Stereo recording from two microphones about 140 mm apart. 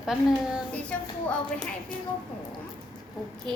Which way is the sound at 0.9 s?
10° left (ahead or behind).